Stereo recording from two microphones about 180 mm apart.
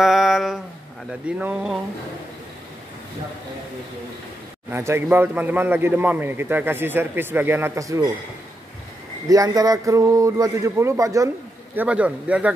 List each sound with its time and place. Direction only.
0.0 s a sound: centre (ahead or behind)
1.2 s speech: 5° right (ahead or behind)
4.6 s speech: 15° right (ahead or behind)
9.3 s speech: 20° right (ahead or behind)